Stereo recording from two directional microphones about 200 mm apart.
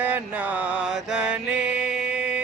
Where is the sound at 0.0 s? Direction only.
5° right (ahead or behind).